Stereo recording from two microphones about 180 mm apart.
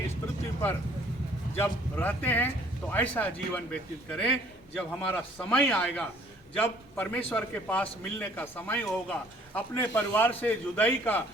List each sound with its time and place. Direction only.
1.5 s a man's voice: 10° left (ahead or behind)